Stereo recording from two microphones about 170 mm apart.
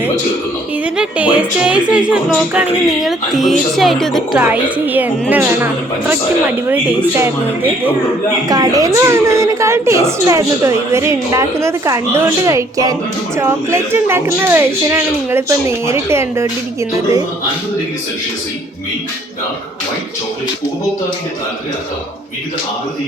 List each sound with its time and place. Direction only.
0.9 s a woman's voice: 5° right (ahead or behind)
4.4 s a woman's voice: 10° right (ahead or behind)
6.7 s a woman's voice: 10° right (ahead or behind)